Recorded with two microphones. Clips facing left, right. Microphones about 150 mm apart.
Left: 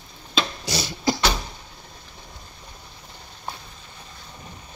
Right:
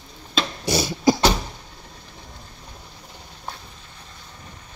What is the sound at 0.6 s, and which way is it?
Beatboxing, 25° right (ahead or behind).